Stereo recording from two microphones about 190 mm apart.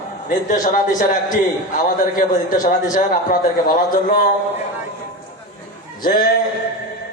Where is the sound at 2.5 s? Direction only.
45° left (ahead or behind).